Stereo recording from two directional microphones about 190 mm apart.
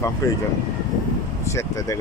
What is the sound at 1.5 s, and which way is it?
Speech, 15° left (ahead or behind).